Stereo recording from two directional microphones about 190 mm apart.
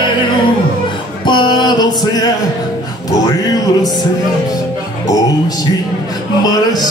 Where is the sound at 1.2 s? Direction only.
25° left (ahead or behind).